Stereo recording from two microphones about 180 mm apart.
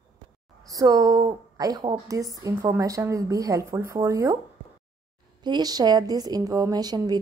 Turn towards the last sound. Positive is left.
turn(degrees=-20)  # may be behind; listen again after turning